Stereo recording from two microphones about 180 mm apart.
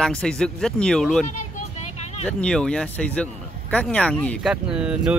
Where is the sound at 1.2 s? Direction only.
45° left (ahead or behind).